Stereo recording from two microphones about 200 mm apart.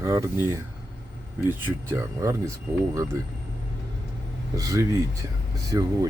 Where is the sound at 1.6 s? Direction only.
15° right (ahead or behind).